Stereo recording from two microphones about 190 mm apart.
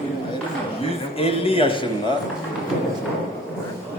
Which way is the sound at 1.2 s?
30° left (ahead or behind).